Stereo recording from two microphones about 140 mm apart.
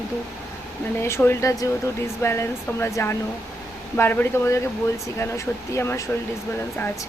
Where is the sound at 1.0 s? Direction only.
20° left (ahead or behind).